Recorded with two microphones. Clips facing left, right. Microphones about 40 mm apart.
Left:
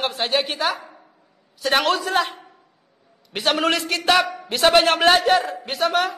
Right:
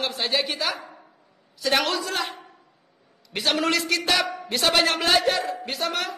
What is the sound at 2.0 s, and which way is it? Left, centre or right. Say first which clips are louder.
Speech: left 7 dB; left.